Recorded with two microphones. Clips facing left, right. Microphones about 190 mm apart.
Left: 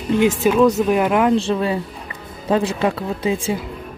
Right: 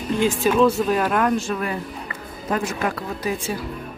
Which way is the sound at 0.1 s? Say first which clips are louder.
Left 4 dB; 20° left (ahead or behind).